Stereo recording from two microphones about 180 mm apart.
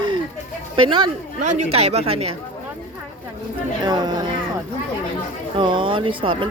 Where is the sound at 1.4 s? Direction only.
40° right (ahead or behind).